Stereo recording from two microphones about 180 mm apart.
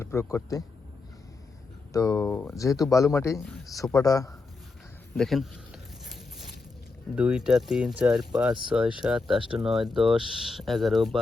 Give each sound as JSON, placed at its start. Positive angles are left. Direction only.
{"t": 0.0, "sound": "speech", "side_deg": 15}
{"t": 1.9, "sound": "a man's voice", "side_deg": 20}
{"t": 5.1, "sound": "a sound", "side_deg": 0}
{"t": 7.2, "sound": "speech", "side_deg": -5}